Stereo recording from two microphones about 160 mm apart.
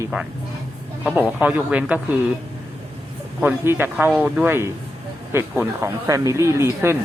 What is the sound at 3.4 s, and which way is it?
Speech, 15° right (ahead or behind).